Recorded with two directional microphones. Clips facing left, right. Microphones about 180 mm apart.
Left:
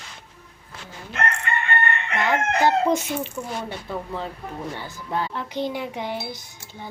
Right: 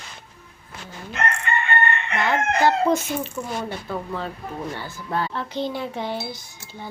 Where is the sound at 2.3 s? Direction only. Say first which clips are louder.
Even; 20° left (ahead or behind).